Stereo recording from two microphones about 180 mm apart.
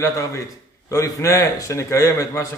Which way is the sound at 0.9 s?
15° left (ahead or behind).